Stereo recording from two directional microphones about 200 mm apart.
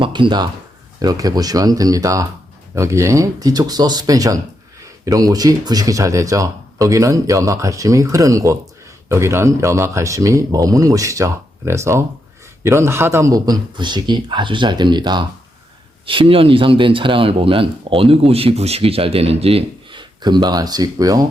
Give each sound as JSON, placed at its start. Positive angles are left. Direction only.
{"t": 0.0, "sound": "speech", "side_deg": -25}